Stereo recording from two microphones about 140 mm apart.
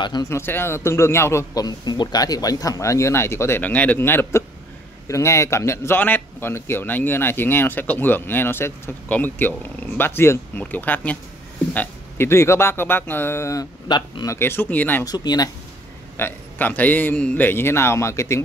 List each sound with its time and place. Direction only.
0.0 s speech: 30° left (ahead or behind)
0.3 s a man's voice: 15° left (ahead or behind); by 14.3 s 30° left (ahead or behind)
14.3 s a man's voice: 15° left (ahead or behind)
15.0 s a man's voice: 30° left (ahead or behind)
16.2 s a man's voice: 15° left (ahead or behind)